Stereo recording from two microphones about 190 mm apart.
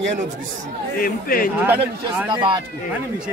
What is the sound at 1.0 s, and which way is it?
Speech, 50° left (ahead or behind).